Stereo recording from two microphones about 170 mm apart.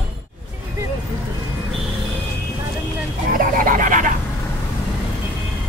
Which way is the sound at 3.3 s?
55° right (ahead or behind).